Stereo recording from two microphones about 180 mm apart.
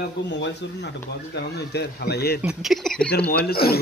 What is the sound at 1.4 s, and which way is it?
A man's voice, 65° left (ahead or behind).